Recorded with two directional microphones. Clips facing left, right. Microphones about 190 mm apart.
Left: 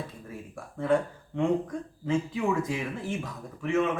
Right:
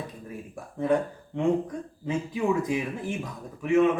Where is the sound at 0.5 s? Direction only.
20° right (ahead or behind).